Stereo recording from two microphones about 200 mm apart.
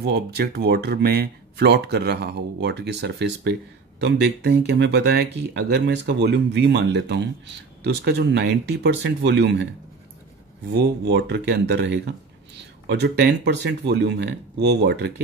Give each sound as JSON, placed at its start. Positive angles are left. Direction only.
{"t": 0.0, "sound": "speech", "side_deg": -55}
{"t": 10.7, "sound": "speech", "side_deg": -55}